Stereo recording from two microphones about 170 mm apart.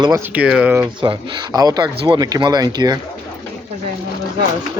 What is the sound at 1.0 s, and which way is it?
Speech, 25° right (ahead or behind).